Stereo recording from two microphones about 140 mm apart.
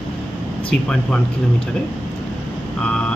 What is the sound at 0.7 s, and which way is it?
Speech, 5° left (ahead or behind).